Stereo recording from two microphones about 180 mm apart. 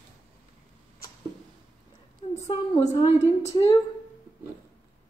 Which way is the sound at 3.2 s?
40° left (ahead or behind).